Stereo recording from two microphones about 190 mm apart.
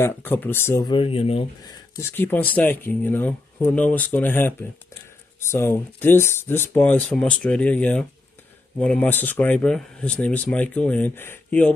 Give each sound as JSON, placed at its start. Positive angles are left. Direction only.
{"t": 0.0, "sound": "speech", "side_deg": 10}
{"t": 0.8, "sound": "speech", "side_deg": 25}
{"t": 2.0, "sound": "speech", "side_deg": 10}